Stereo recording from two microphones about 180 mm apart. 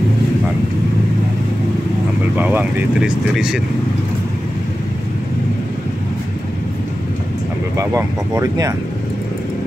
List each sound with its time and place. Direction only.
2.3 s vehicle: 10° right (ahead or behind)
3.1 s speech: 5° right (ahead or behind)
7.7 s speech: 15° right (ahead or behind)